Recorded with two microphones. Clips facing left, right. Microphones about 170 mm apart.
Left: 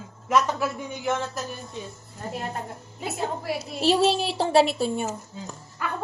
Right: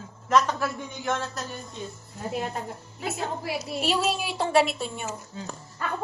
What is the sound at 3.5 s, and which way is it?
A woman's voice, 30° left (ahead or behind).